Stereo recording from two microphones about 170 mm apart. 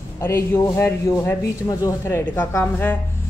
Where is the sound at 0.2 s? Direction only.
15° left (ahead or behind).